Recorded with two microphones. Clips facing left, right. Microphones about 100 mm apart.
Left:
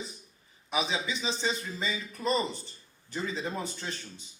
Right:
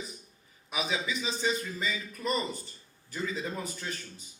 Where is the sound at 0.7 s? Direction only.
25° left (ahead or behind).